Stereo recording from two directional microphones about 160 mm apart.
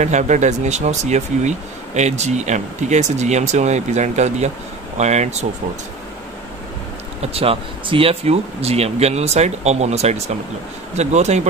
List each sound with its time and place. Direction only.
0.0 s speech: 50° right (ahead or behind)
7.3 s speech: 35° right (ahead or behind)